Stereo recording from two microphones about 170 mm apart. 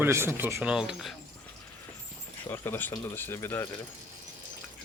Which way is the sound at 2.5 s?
10° left (ahead or behind).